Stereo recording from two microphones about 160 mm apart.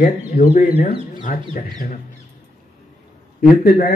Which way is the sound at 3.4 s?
65° left (ahead or behind).